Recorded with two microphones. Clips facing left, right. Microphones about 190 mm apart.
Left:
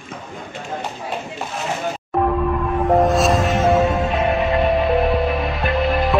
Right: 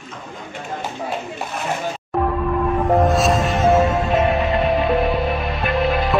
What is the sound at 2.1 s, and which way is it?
Music, centre (ahead or behind).